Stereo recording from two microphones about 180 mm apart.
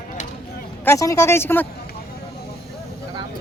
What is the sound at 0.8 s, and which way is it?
Speech, 15° left (ahead or behind).